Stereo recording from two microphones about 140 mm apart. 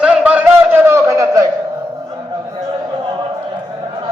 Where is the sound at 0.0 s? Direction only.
10° right (ahead or behind).